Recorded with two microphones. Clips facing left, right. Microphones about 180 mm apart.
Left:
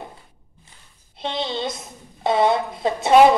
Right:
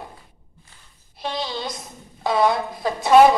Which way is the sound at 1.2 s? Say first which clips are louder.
Left 2 dB; 25° left (ahead or behind).